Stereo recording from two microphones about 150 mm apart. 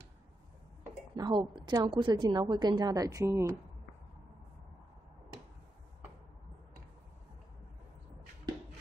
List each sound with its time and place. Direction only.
1.1 s a woman's voice: 30° right (ahead or behind)